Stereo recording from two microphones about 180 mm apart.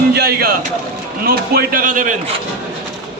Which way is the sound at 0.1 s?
65° right (ahead or behind).